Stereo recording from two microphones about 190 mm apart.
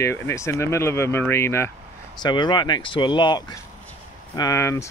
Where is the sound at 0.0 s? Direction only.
15° left (ahead or behind).